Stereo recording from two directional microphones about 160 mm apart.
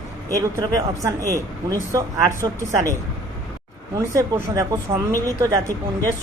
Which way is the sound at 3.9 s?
20° right (ahead or behind).